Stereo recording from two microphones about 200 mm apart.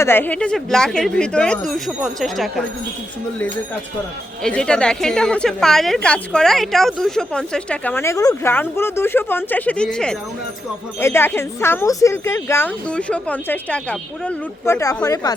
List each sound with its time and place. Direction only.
0.0 s a woman's voice: 10° left (ahead or behind)
4.4 s a woman's voice: 5° left (ahead or behind)